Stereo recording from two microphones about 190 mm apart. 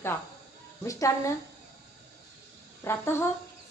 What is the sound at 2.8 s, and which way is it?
Speech, 15° left (ahead or behind).